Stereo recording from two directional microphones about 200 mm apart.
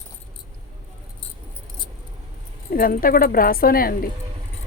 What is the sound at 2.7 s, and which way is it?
Speech, 45° left (ahead or behind).